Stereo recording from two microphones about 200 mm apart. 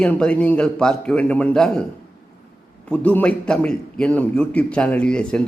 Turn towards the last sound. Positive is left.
turn(degrees=5)  # may be behind; listen again after turning